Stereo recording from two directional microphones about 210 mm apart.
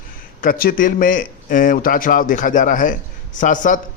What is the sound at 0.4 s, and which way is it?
A man's voice, 40° left (ahead or behind).